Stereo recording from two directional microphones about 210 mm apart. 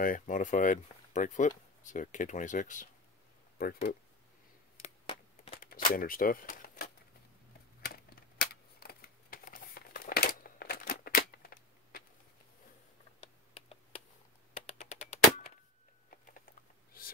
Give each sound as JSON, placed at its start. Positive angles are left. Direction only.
{"t": 0.0, "sound": "speech", "side_deg": 40}
{"t": 4.8, "sound": "a sound", "side_deg": 25}
{"t": 5.6, "sound": "typewriter", "side_deg": 40}
{"t": 7.8, "sound": "computer keyboard", "side_deg": 45}
{"t": 13.2, "sound": "typing", "side_deg": 30}
{"t": 14.7, "sound": "a sound", "side_deg": 30}